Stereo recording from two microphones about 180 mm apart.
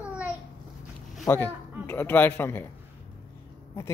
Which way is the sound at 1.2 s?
10° left (ahead or behind).